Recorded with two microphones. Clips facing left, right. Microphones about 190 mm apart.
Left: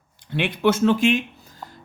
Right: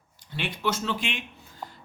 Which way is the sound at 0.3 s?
60° left (ahead or behind).